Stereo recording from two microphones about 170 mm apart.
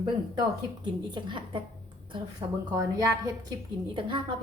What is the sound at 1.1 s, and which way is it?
A woman's voice, 30° right (ahead or behind).